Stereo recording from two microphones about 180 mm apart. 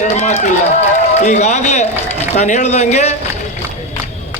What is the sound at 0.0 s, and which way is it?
A man's voice, 40° left (ahead or behind).